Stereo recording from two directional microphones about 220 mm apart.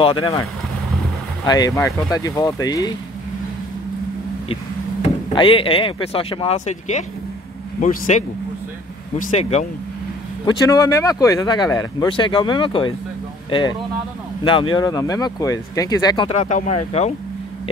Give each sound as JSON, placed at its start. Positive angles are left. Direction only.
{"t": 0.0, "sound": "speech", "side_deg": 25}
{"t": 5.0, "sound": "speech", "side_deg": 25}
{"t": 9.4, "sound": "speech", "side_deg": 30}
{"t": 10.4, "sound": "speech", "side_deg": 15}
{"t": 16.4, "sound": "speech", "side_deg": 35}